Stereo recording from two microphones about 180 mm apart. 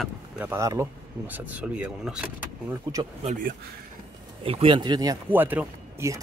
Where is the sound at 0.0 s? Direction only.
10° right (ahead or behind).